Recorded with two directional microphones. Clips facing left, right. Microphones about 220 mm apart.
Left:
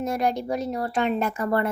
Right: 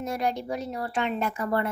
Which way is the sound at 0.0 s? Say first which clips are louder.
Left 4 dB; 45° left (ahead or behind).